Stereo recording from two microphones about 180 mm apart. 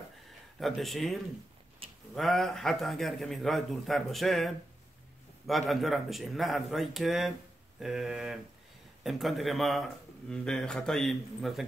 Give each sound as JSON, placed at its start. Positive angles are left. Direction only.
{"t": 0.6, "sound": "a man's voice", "side_deg": 0}
{"t": 1.8, "sound": "a sound", "side_deg": -30}
{"t": 2.1, "sound": "a man's voice", "side_deg": 0}